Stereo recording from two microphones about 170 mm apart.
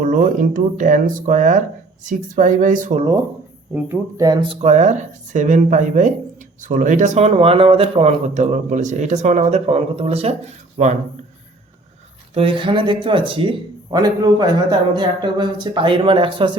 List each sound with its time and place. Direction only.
0.0 s speech: 50° right (ahead or behind)
2.9 s speech: 25° right (ahead or behind)
3.8 s speech: 15° right (ahead or behind)
4.6 s speech: 45° right (ahead or behind)
12.3 s speech: 30° right (ahead or behind)